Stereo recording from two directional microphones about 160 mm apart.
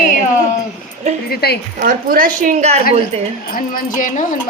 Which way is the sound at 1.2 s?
80° left.